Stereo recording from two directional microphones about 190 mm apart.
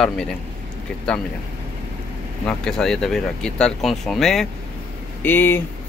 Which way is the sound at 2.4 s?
5° left (ahead or behind).